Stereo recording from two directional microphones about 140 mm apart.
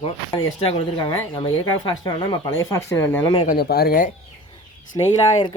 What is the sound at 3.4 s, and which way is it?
Speech, 90° left.